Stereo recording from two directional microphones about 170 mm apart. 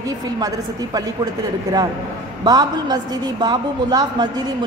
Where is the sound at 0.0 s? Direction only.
20° right (ahead or behind).